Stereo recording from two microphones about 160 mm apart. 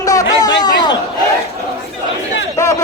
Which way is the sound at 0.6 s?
25° left (ahead or behind).